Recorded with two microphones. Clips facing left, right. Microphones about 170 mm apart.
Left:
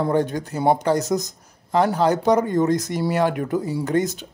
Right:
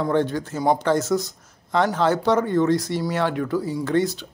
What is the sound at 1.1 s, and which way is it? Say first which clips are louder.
Speech: right 1 dB; 40° left (ahead or behind).